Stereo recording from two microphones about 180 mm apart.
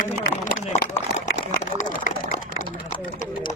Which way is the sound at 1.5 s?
45° left (ahead or behind).